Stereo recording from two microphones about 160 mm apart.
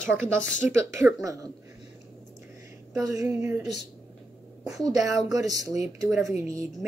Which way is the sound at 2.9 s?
20° right (ahead or behind).